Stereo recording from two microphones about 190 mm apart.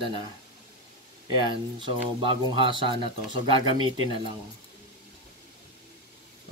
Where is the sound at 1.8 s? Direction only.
25° right (ahead or behind).